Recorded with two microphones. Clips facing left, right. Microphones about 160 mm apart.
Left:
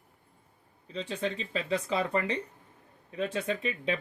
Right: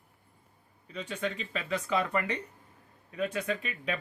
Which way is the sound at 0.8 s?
30° left (ahead or behind).